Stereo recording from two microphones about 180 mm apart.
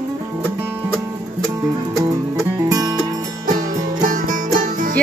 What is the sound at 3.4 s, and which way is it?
Music, 45° right (ahead or behind).